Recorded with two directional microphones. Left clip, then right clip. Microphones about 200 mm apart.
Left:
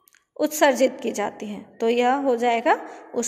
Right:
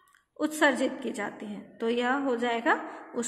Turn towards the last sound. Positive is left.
turn(degrees=30)  # may be behind; listen again after turning